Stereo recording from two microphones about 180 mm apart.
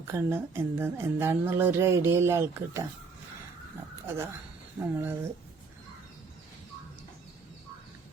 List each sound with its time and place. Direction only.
0.1 s speech: 15° right (ahead or behind)
4.8 s speech: 10° right (ahead or behind)